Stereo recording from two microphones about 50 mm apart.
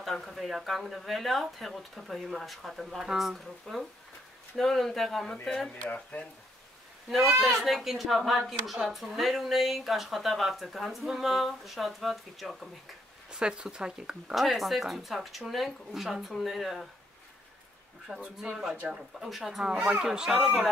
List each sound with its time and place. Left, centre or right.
0.0 s speech: centre
6.1 s speech: left
7.1 s speech: centre
13.3 s speech: centre
14.3 s speech: centre
18.2 s speech: right
19.2 s speech: centre
19.6 s speech: centre
20.2 s speech: centre